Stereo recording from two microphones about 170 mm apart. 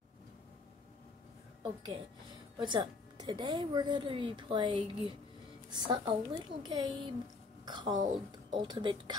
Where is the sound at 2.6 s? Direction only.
25° right (ahead or behind).